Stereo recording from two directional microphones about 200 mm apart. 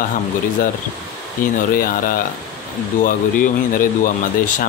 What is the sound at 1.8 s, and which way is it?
Speech, 45° left (ahead or behind).